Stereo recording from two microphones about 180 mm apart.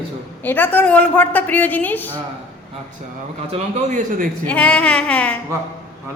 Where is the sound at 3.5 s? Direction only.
40° right (ahead or behind).